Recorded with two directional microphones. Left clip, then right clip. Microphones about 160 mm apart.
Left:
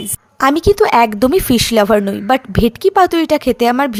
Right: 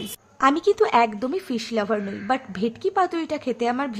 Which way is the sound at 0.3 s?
45° left (ahead or behind).